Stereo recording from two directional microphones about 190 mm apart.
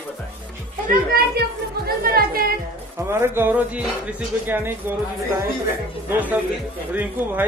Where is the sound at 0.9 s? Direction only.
55° right (ahead or behind).